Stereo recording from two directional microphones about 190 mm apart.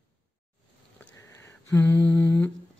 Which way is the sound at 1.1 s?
15° left (ahead or behind).